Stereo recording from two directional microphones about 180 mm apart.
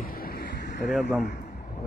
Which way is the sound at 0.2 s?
60° left (ahead or behind).